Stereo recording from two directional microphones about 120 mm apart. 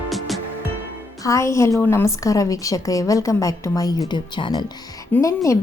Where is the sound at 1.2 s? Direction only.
25° left (ahead or behind).